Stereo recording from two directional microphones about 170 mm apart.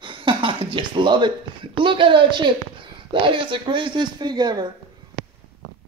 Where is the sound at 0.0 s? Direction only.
30° right (ahead or behind).